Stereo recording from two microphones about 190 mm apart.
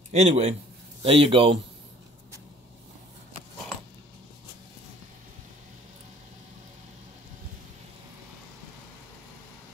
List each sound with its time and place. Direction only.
0.1 s a man's voice: 35° right (ahead or behind)